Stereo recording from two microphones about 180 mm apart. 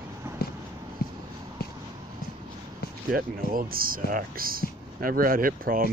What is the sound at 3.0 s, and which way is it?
Speech, 55° right (ahead or behind).